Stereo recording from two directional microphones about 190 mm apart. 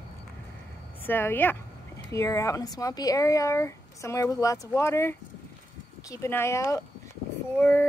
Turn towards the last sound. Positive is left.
turn(degrees=10)  # may be behind; listen again after turning